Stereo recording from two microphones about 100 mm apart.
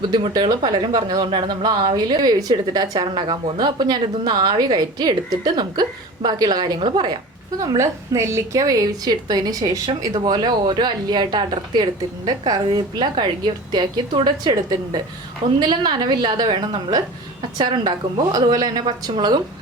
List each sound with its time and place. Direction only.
0.1 s a woman's voice: 45° right (ahead or behind)
1.3 s a woman's voice: 55° right (ahead or behind)
7.6 s a woman's voice: 30° right (ahead or behind)
10.1 s a woman's voice: 50° right (ahead or behind)